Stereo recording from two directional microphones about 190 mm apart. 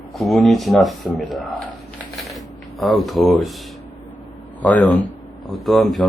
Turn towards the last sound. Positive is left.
turn(degrees=0)  # may be behind; listen again after turning